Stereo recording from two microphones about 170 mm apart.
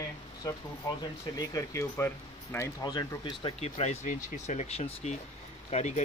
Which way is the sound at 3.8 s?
40° left (ahead or behind).